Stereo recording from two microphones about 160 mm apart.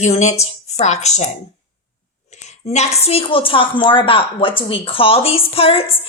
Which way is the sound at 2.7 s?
45° left (ahead or behind).